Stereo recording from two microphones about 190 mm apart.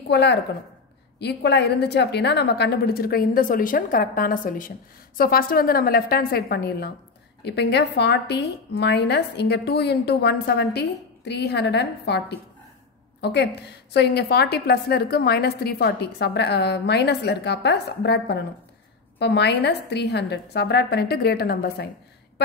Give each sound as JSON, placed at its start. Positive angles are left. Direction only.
{"t": 0.1, "sound": "a woman's voice", "side_deg": 60}